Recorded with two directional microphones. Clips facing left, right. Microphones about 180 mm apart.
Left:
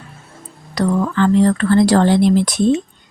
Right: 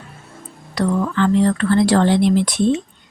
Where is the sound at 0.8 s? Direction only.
40° left (ahead or behind).